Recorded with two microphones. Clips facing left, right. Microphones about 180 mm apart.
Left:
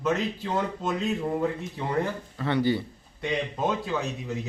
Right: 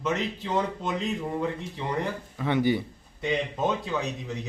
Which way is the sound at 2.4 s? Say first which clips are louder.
Right 1 dB; 15° right (ahead or behind).